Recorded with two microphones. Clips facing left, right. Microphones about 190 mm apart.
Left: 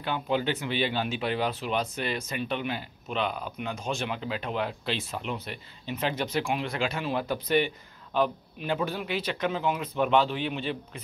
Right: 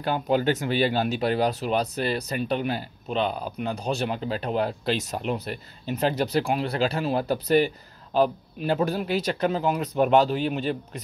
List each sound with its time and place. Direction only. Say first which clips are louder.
0.0 s speech: right 5 dB; 40° right (ahead or behind)